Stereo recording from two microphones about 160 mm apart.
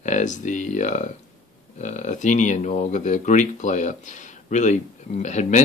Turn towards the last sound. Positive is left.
turn(degrees=50)  # may be behind; listen again after turning